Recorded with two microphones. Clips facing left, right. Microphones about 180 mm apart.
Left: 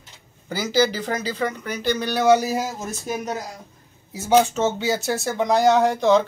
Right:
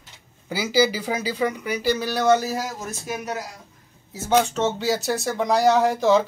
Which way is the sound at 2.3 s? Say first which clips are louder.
Left 2 dB; 15° left (ahead or behind).